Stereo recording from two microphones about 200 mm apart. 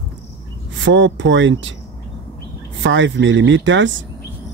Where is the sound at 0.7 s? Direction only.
65° right (ahead or behind).